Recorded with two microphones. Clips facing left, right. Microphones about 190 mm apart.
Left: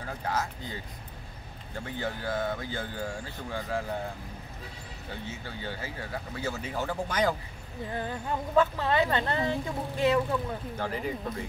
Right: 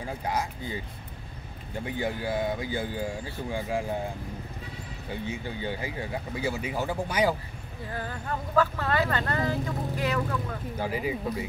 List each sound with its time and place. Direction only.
0.0 s speech: 15° right (ahead or behind)
1.8 s speech: 15° right (ahead or behind)
5.1 s speech: 15° right (ahead or behind)
7.9 s speech: 20° left (ahead or behind)
10.8 s speech: 10° right (ahead or behind)